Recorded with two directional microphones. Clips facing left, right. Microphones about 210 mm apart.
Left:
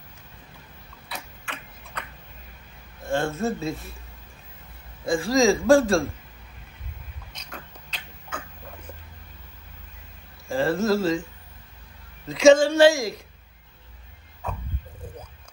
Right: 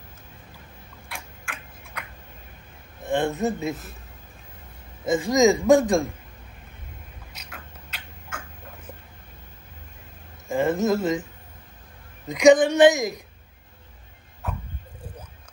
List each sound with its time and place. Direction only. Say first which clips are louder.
1.1 s tick-tock: left 2 dB; 10° right (ahead or behind)
3.0 s a man's voice: right 2 dB; 20° right (ahead or behind)
5.0 s a man's voice: right 1 dB; 20° right (ahead or behind)
7.3 s a sound: left 3 dB; 5° right (ahead or behind)
10.5 s a woman's voice: even; 15° right (ahead or behind)
12.3 s a woman's voice: even; 15° right (ahead or behind)